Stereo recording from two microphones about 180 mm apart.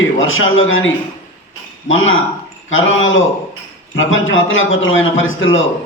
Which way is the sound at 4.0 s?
90° left.